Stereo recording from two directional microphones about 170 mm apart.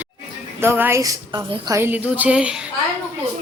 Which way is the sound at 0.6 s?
15° right (ahead or behind).